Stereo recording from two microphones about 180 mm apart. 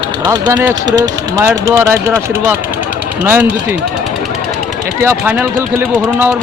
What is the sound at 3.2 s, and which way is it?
Speech, 10° right (ahead or behind).